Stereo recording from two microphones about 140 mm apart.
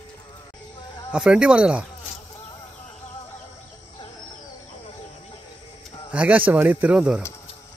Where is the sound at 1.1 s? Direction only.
10° right (ahead or behind).